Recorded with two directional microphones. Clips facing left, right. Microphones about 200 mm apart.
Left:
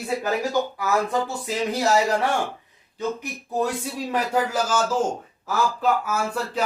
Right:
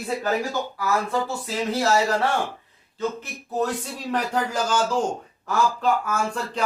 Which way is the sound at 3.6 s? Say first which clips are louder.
Left 1 dB; 10° left (ahead or behind).